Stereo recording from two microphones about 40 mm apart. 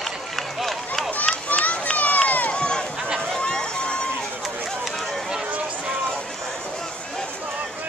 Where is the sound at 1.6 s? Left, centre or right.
Left.